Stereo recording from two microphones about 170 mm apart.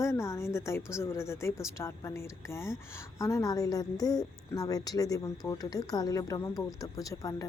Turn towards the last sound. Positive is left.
turn(degrees=20)  # may be behind; listen again after turning